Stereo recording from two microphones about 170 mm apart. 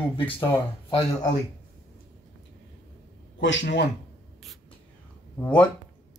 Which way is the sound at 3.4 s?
90° left.